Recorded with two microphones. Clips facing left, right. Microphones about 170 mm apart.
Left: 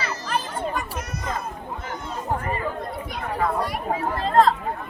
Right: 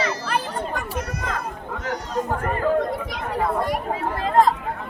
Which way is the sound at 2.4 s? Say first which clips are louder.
Right 7 dB; 75° right (ahead or behind).